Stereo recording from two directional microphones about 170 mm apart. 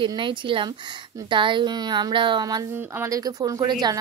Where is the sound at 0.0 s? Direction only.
30° right (ahead or behind).